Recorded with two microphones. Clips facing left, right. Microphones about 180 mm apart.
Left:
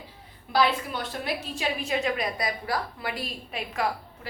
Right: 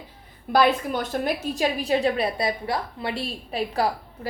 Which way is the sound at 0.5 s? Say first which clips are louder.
Right 5 dB; 50° right (ahead or behind).